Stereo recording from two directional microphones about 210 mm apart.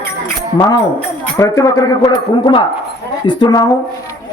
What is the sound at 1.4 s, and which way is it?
A man's voice, 15° left (ahead or behind).